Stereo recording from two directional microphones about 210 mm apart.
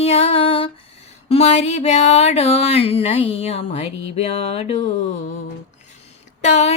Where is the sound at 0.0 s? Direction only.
30° left (ahead or behind).